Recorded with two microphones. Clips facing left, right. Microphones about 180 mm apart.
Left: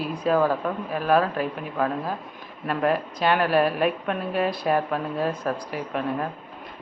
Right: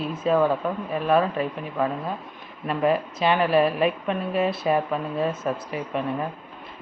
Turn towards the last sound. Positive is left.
turn(degrees=0)  # may be behind; listen again after turning